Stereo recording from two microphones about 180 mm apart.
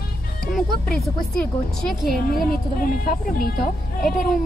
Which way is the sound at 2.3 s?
50° left (ahead or behind).